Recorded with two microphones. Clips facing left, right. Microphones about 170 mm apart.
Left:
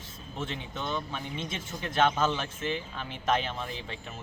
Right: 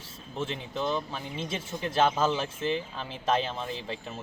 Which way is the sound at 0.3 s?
30° right (ahead or behind).